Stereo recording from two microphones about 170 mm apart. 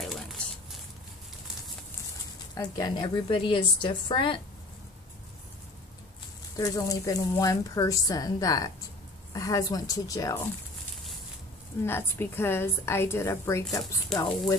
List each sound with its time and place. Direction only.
0.0 s a sound: centre (ahead or behind)
2.5 s a woman's voice: 25° left (ahead or behind)
6.5 s a woman's voice: 20° left (ahead or behind)
11.8 s a woman's voice: 15° left (ahead or behind)
14.1 s speech: 5° left (ahead or behind)